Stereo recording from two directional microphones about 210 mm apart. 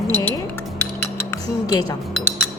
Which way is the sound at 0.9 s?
15° left (ahead or behind).